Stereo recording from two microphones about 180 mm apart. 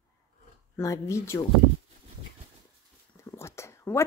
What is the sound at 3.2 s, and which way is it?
Whispering, 15° left (ahead or behind).